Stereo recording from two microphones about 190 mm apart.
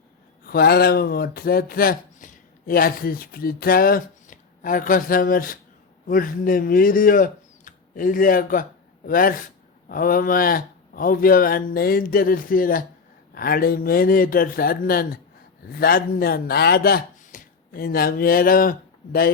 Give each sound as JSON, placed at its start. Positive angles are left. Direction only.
{"t": 0.4, "sound": "speech", "side_deg": 55}